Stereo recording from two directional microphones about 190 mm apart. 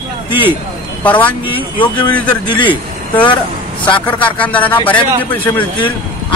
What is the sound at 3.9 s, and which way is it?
Speech, 10° left (ahead or behind).